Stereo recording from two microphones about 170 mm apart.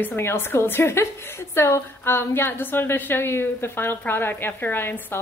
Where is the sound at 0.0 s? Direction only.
15° left (ahead or behind).